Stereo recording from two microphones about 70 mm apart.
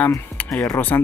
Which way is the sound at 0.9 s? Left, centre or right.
Left.